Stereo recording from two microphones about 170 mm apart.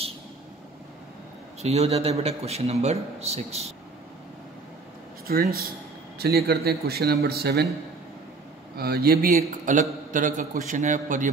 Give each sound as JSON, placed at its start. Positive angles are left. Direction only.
{"t": 1.6, "sound": "a man's voice", "side_deg": -40}
{"t": 5.2, "sound": "a man's voice", "side_deg": -60}
{"t": 8.7, "sound": "speech", "side_deg": -65}
{"t": 9.7, "sound": "a man's voice", "side_deg": -50}